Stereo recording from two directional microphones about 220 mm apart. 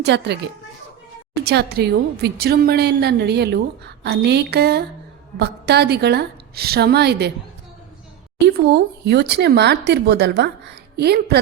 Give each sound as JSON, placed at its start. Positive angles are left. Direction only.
{"t": 0.0, "sound": "a woman's voice", "side_deg": -50}
{"t": 1.5, "sound": "a woman's voice", "side_deg": -50}
{"t": 8.4, "sound": "a woman's voice", "side_deg": -50}